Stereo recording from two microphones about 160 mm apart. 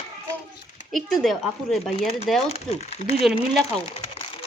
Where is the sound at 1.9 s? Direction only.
40° left (ahead or behind).